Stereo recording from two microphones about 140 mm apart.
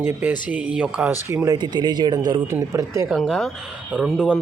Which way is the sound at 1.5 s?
30° right (ahead or behind).